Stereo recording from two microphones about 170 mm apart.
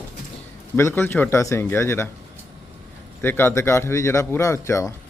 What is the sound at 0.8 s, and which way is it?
Speech, 15° left (ahead or behind).